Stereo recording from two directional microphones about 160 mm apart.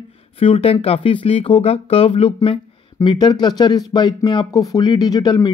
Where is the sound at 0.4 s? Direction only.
40° left (ahead or behind).